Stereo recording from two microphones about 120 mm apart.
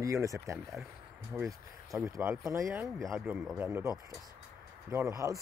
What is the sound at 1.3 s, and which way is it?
Speech, 15° right (ahead or behind).